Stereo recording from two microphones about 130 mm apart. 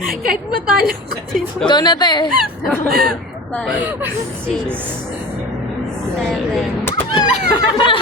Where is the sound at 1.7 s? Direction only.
35° left (ahead or behind).